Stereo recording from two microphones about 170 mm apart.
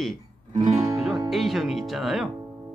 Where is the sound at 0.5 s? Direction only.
40° right (ahead or behind).